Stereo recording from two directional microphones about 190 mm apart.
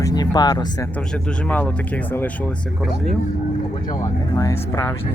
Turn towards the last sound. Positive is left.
turn(degrees=15)  # may be behind; listen again after turning